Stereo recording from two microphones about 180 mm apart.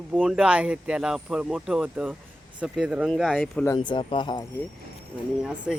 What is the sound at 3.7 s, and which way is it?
Speech, 25° left (ahead or behind).